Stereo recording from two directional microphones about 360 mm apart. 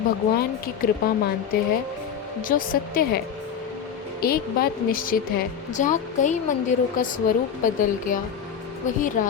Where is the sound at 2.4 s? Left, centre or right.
Left.